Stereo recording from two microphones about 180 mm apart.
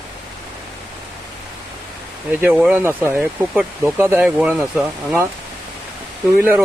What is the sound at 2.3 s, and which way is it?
Speech, 10° right (ahead or behind).